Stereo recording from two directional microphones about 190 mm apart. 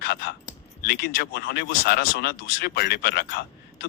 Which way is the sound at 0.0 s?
55° left (ahead or behind).